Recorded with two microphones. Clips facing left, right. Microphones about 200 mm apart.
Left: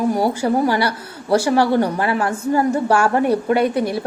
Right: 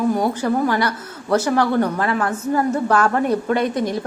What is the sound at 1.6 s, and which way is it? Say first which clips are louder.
Speech: left 2 dB; 30° left (ahead or behind).